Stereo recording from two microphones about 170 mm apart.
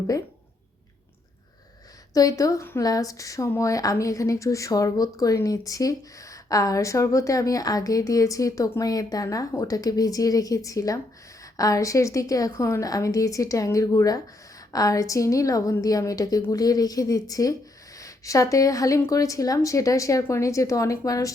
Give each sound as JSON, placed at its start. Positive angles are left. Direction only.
{"t": 2.1, "sound": "a woman's voice", "side_deg": 20}